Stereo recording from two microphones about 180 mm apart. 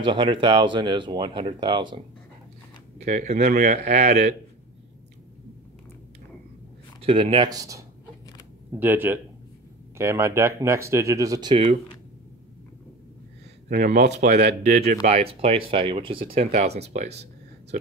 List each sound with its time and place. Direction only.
0.0 s speech: 30° right (ahead or behind)
3.0 s speech: 40° right (ahead or behind)
7.0 s speech: 30° right (ahead or behind)
13.7 s speech: 50° right (ahead or behind)
15.0 s speech: 35° right (ahead or behind)